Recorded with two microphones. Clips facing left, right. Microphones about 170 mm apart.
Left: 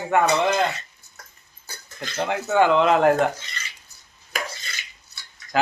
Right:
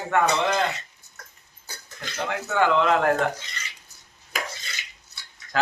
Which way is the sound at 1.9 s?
20° left (ahead or behind).